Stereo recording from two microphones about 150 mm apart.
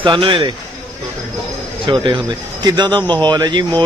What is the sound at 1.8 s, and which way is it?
A man's voice, 30° right (ahead or behind).